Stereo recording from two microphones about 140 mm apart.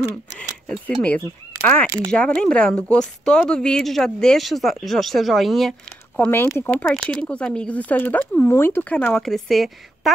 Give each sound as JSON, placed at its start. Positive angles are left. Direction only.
{"t": 0.7, "sound": "speech", "side_deg": 10}
{"t": 1.9, "sound": "speech", "side_deg": -25}
{"t": 2.1, "sound": "speech", "side_deg": 5}
{"t": 6.1, "sound": "speech", "side_deg": 15}